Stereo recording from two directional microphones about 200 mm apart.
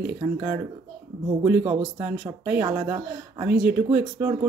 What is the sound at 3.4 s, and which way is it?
Speech, 55° right (ahead or behind).